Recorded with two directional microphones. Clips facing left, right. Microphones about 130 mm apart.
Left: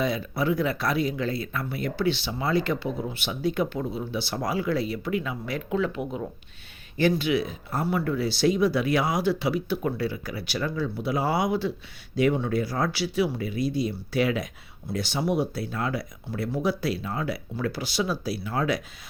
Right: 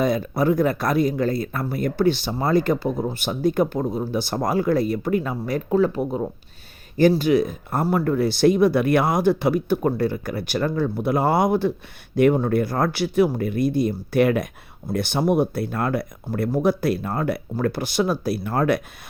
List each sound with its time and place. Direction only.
0.0 s speech: 45° right (ahead or behind)